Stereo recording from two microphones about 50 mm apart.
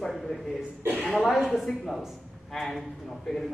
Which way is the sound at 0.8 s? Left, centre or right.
Right.